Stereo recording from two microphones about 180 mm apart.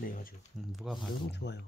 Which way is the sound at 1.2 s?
70° left (ahead or behind).